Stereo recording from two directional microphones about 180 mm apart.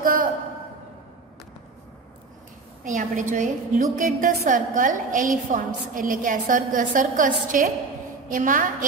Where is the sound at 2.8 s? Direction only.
45° right (ahead or behind).